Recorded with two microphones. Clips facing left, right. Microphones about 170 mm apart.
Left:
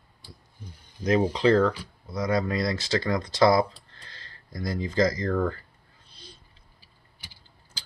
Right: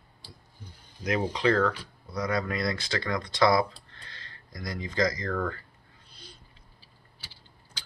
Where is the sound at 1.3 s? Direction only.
30° left (ahead or behind).